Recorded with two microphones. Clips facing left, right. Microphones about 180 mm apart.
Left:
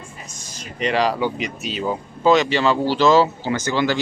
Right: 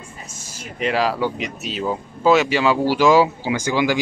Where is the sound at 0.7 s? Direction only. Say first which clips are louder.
Even; 5° right (ahead or behind).